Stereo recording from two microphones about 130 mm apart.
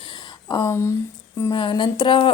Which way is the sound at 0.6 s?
20° left (ahead or behind).